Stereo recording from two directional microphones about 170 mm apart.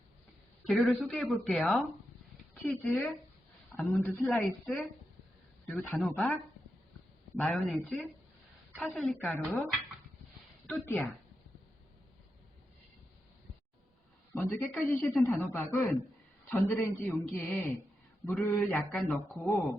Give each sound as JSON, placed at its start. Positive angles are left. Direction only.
{"t": 0.7, "sound": "a man's voice", "side_deg": 5}
{"t": 7.3, "sound": "a man's voice", "side_deg": 10}
{"t": 10.7, "sound": "a man's voice", "side_deg": 10}
{"t": 14.3, "sound": "a man's voice", "side_deg": 10}